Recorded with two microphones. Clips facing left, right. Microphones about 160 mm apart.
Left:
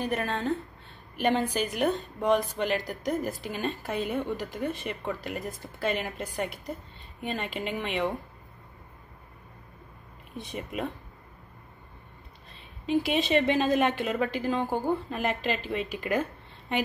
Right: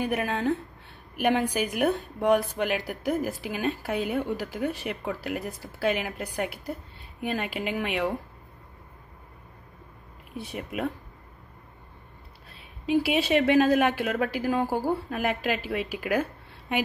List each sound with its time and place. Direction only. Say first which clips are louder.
0.1 s a woman's voice: right 2 dB; 10° right (ahead or behind)
10.3 s a woman's voice: right 1 dB; 10° right (ahead or behind)
12.5 s a woman's voice: right 2 dB; 10° right (ahead or behind)